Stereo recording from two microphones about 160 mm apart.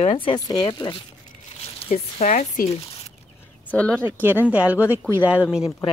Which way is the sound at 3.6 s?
10° left (ahead or behind).